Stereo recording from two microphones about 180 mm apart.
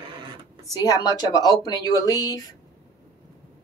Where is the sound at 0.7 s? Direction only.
20° left (ahead or behind).